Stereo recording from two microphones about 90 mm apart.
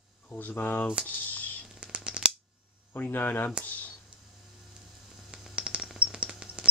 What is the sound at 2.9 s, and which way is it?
Speech, 20° left (ahead or behind).